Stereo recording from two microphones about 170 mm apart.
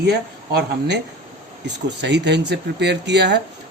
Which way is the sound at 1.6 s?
90° right.